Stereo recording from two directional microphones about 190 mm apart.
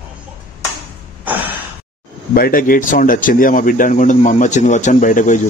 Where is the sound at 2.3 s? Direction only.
50° left (ahead or behind).